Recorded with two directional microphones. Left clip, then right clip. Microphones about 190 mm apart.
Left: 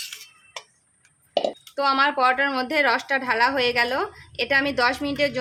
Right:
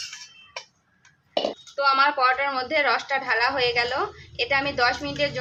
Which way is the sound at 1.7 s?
70° left (ahead or behind).